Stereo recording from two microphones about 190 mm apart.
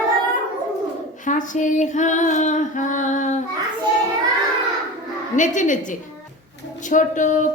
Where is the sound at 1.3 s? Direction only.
40° left (ahead or behind).